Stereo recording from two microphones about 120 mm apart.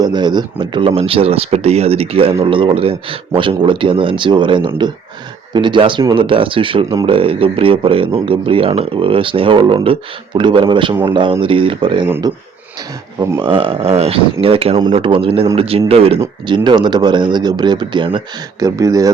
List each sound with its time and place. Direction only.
0.0 s speech: 35° right (ahead or behind)
12.2 s speech: 35° right (ahead or behind)
13.4 s speech: 45° right (ahead or behind)
16.5 s speech: 40° right (ahead or behind)
18.6 s speech: 30° right (ahead or behind)